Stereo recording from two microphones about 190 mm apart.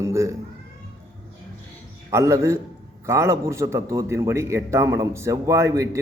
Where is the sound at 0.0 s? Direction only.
15° right (ahead or behind).